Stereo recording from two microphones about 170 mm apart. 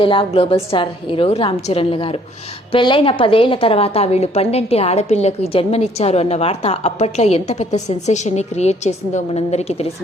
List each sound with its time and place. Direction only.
0.0 s a woman's voice: 30° left (ahead or behind)